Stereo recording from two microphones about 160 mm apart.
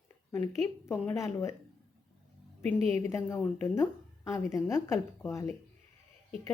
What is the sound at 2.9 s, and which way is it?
Speech, 15° left (ahead or behind).